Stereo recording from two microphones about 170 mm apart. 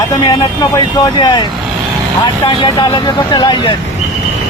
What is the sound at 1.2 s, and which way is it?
Speech, 25° left (ahead or behind).